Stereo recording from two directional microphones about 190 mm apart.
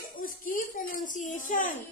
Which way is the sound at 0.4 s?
45° left (ahead or behind).